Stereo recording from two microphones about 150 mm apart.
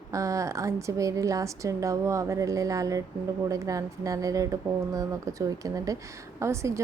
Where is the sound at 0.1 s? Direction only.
20° right (ahead or behind).